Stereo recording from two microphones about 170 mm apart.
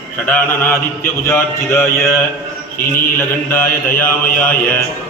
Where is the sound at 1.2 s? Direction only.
15° left (ahead or behind).